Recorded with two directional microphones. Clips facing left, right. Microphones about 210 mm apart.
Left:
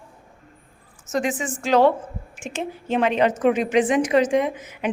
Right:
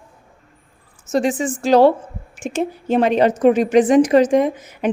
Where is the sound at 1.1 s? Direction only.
30° right (ahead or behind).